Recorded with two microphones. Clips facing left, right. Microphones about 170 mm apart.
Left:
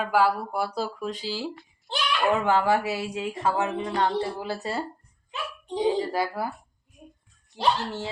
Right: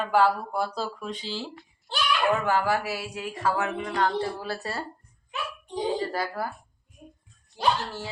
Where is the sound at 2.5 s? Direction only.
25° left (ahead or behind).